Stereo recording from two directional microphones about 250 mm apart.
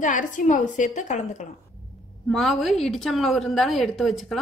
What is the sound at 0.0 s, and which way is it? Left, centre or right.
A woman's voice, left.